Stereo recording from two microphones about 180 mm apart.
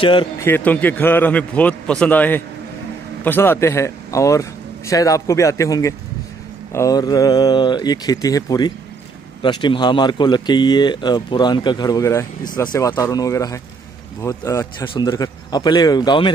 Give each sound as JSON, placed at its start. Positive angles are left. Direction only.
{"t": 0.0, "sound": "speech", "side_deg": 30}
{"t": 0.4, "sound": "a man's voice", "side_deg": 10}